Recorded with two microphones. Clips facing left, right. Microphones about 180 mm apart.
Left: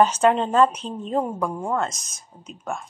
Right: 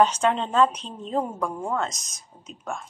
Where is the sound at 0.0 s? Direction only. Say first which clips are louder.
Left 3 dB; 5° left (ahead or behind).